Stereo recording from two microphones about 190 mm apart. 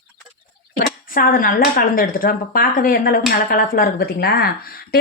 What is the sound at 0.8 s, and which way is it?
Speech, 50° left (ahead or behind).